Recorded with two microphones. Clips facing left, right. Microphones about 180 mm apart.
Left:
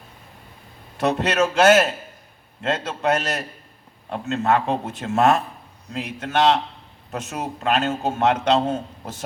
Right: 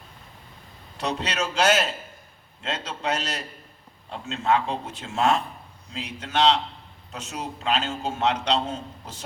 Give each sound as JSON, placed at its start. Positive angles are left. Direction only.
{"t": 0.9, "sound": "a man's voice", "side_deg": 50}